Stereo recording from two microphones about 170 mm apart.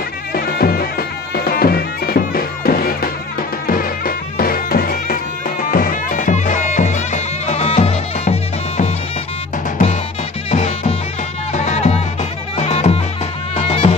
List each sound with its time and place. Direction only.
0.3 s music: 65° left (ahead or behind); by 8.9 s 40° left (ahead or behind)
10.5 s music: 40° left (ahead or behind)